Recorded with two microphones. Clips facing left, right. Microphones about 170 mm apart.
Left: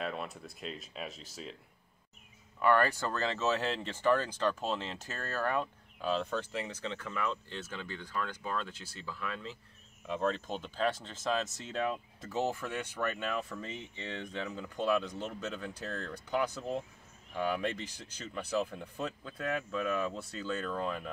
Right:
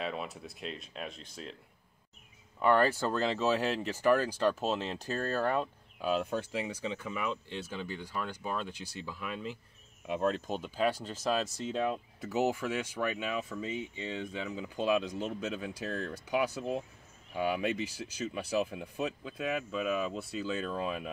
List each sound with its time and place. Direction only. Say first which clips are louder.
0.0 s speech: right 1 dB; centre (ahead or behind)
2.6 s speech: right 2 dB; 20° right (ahead or behind)
5.1 s speech: right 3 dB; 35° right (ahead or behind)
5.9 s speech: right 2 dB; 10° right (ahead or behind)